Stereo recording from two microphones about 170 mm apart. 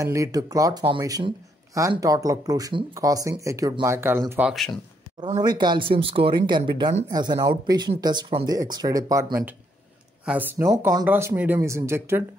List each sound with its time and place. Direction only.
0.0 s speech: 20° right (ahead or behind)
4.4 s speech: centre (ahead or behind)
5.4 s speech: 25° right (ahead or behind)